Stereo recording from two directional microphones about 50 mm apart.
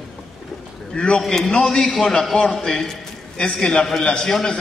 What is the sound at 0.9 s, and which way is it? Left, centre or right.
A man's voice, centre.